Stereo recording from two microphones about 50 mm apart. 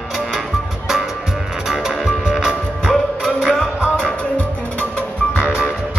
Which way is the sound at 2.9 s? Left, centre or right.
Centre.